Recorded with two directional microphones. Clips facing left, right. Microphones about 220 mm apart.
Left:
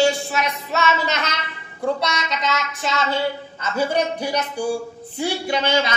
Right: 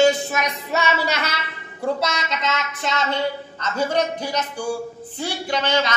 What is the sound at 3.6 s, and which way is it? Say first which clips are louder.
A woman's voice: left 1 dB; 10° left (ahead or behind).